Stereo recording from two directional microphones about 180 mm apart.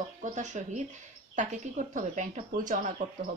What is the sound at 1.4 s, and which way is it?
Speech, 45° right (ahead or behind).